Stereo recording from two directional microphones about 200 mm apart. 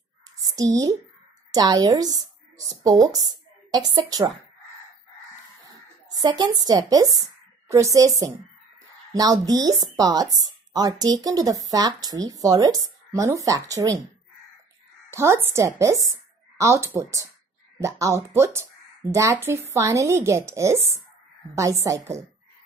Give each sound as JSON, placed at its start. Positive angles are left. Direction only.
{"t": 0.4, "sound": "a woman's voice", "side_deg": -15}
{"t": 5.7, "sound": "a woman's voice", "side_deg": -20}
{"t": 15.0, "sound": "a woman's voice", "side_deg": -15}